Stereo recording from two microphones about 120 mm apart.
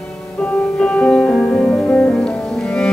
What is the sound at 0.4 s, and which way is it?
Music, 10° left (ahead or behind).